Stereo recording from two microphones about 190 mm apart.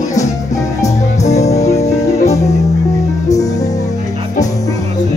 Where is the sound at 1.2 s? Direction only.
35° left (ahead or behind).